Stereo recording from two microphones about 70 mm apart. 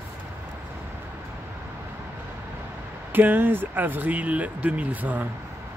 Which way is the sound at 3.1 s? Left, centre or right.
Right.